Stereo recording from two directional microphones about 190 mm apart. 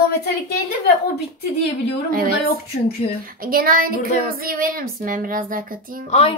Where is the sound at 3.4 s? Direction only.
50° right (ahead or behind).